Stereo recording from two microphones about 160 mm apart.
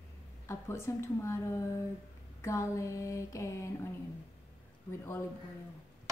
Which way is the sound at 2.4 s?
20° left (ahead or behind).